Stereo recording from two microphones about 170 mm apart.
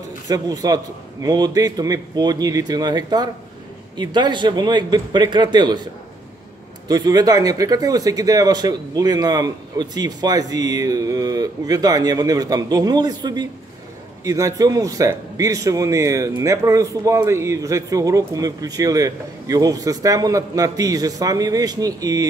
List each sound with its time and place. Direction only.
0.3 s speech: 20° right (ahead or behind)
6.9 s speech: 25° right (ahead or behind)